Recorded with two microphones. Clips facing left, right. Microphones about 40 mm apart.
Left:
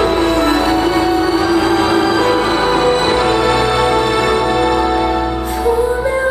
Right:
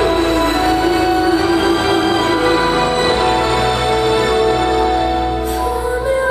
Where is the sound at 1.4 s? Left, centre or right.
Right.